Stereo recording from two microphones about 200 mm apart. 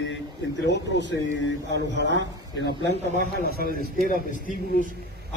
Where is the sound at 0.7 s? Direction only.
60° left (ahead or behind).